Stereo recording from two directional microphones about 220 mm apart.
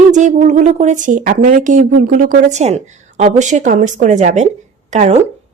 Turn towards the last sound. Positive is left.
turn(degrees=-30)  # may be behind; listen again after turning